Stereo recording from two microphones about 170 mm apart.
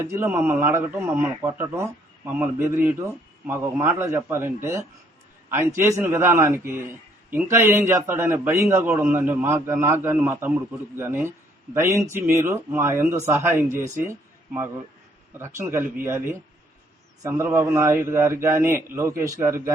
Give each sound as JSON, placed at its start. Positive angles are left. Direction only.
{"t": 0.0, "sound": "speech", "side_deg": -15}